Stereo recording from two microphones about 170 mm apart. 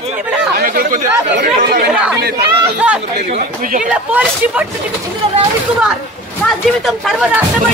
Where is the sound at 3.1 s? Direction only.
45° right (ahead or behind).